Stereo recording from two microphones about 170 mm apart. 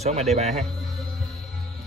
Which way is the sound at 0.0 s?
40° right (ahead or behind).